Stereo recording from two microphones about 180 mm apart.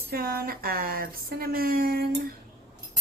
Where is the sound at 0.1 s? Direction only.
55° right (ahead or behind).